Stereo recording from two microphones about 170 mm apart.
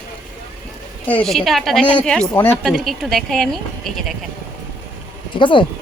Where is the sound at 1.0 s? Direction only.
5° left (ahead or behind).